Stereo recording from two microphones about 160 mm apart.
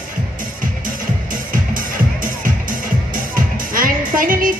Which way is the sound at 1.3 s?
60° right (ahead or behind).